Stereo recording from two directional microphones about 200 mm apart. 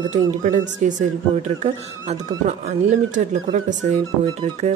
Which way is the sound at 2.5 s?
35° right (ahead or behind).